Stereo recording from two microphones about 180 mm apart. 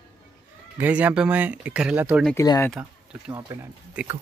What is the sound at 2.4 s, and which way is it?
Speech, 15° left (ahead or behind).